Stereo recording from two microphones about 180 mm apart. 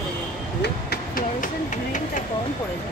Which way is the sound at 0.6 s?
55° left (ahead or behind).